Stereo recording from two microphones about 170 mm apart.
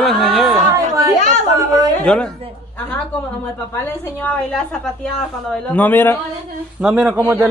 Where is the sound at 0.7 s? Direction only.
20° right (ahead or behind).